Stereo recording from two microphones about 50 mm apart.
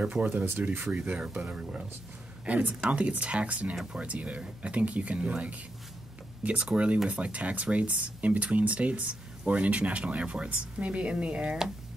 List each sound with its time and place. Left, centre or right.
0.0 s speech: right